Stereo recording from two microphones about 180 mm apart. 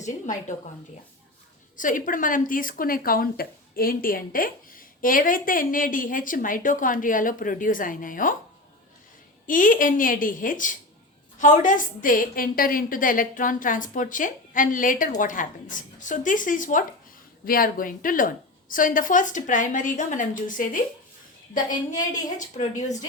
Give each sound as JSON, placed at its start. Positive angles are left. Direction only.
{"t": 0.0, "sound": "speech", "side_deg": 45}
{"t": 1.7, "sound": "speech", "side_deg": 50}
{"t": 9.5, "sound": "speech", "side_deg": 50}
{"t": 21.5, "sound": "a woman's voice", "side_deg": 20}
{"t": 22.4, "sound": "speech", "side_deg": 40}